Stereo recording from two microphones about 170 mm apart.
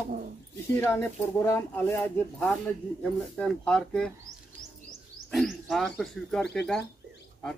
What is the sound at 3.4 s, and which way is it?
Speech, 5° left (ahead or behind).